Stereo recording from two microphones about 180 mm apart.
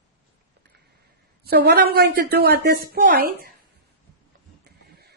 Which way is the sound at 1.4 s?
65° right (ahead or behind).